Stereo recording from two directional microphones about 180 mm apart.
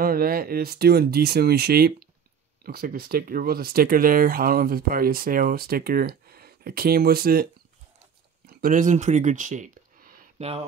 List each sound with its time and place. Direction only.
0.0 s speech: 55° right (ahead or behind)
8.5 s speech: 55° right (ahead or behind)